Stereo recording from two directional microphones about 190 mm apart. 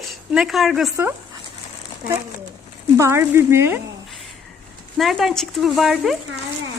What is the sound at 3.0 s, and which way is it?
Speech, 15° right (ahead or behind).